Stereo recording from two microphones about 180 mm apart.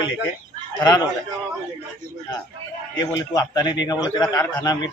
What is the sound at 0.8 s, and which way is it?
Speech, 20° left (ahead or behind).